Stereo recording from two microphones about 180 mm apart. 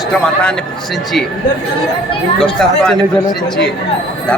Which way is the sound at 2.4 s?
5° left (ahead or behind).